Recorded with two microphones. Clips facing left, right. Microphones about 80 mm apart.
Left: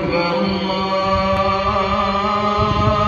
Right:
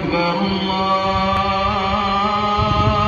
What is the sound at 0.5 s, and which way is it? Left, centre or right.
Chant, centre.